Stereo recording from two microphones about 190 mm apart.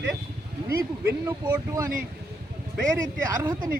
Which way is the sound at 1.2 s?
15° right (ahead or behind).